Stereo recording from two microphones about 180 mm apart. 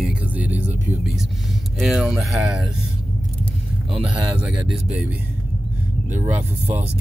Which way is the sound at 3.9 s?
5° right (ahead or behind).